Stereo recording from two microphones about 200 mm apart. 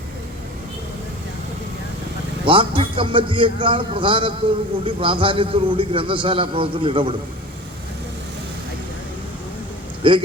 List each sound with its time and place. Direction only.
2.4 s a man's voice: 25° right (ahead or behind)
10.0 s speech: 25° right (ahead or behind)